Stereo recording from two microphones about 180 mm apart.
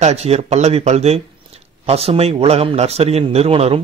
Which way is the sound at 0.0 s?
35° right (ahead or behind).